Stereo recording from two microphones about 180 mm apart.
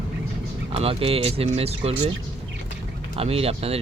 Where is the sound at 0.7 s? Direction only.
35° right (ahead or behind).